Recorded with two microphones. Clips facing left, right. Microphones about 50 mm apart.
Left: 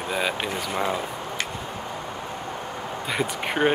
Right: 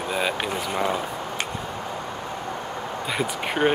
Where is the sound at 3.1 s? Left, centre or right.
Centre.